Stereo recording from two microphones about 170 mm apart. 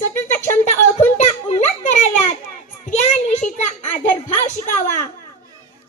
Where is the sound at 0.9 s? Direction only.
45° left (ahead or behind).